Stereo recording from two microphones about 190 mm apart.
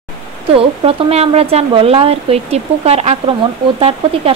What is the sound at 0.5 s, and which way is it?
A woman's voice, 30° right (ahead or behind).